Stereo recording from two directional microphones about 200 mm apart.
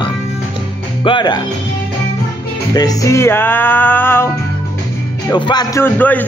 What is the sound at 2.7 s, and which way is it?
Music, 20° left (ahead or behind).